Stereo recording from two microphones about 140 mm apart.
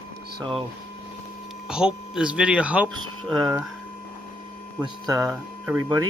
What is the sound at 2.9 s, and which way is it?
Speech, 35° right (ahead or behind).